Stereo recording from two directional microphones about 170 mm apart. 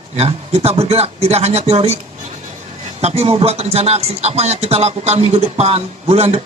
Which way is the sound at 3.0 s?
40° right (ahead or behind).